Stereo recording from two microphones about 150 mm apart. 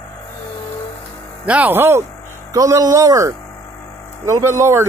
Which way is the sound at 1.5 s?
10° right (ahead or behind).